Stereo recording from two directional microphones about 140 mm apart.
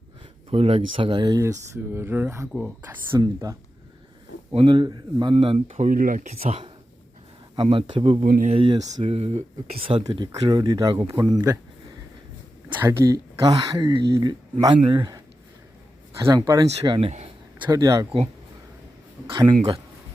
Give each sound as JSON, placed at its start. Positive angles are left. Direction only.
{"t": 0.5, "sound": "speech", "side_deg": -45}
{"t": 1.4, "sound": "speech", "side_deg": -20}
{"t": 3.2, "sound": "speech", "side_deg": -25}
{"t": 4.5, "sound": "speech", "side_deg": -35}
{"t": 5.3, "sound": "speech", "side_deg": -45}
{"t": 6.3, "sound": "speech", "side_deg": -45}
{"t": 8.2, "sound": "speech", "side_deg": -75}
{"t": 8.4, "sound": "speech", "side_deg": -40}
{"t": 9.0, "sound": "speech", "side_deg": -50}
{"t": 10.1, "sound": "speech", "side_deg": -35}
{"t": 12.6, "sound": "speech", "side_deg": -20}
{"t": 16.2, "sound": "speech", "side_deg": -25}